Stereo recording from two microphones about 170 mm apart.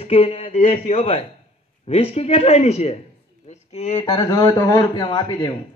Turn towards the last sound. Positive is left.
turn(degrees=25)  # may be behind; listen again after turning